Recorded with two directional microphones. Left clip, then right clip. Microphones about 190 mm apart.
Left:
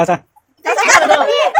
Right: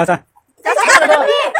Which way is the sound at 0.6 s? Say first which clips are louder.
Right 1 dB; 40° right (ahead or behind).